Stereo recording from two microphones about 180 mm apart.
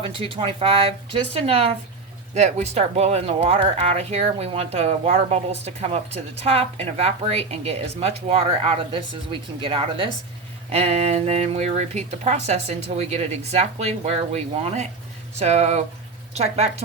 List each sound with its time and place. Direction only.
0.0 s speech: 30° right (ahead or behind)